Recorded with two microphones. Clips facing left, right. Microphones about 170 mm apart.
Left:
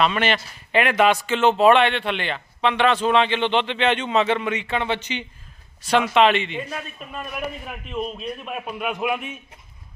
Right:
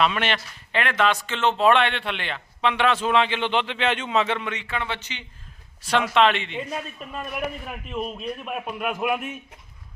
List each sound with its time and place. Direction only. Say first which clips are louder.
0.0 s speech: left 2 dB; centre (ahead or behind)
0.7 s speech: left 5 dB; 10° left (ahead or behind)
4.6 s speech: left 6 dB; 25° left (ahead or behind)
5.8 s speech: left 2 dB; centre (ahead or behind)
7.6 s speech: left 1 dB; centre (ahead or behind)